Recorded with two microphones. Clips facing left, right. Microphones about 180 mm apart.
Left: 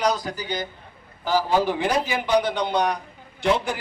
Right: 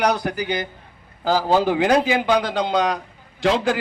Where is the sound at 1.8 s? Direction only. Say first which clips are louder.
Right 6 dB; 90° right.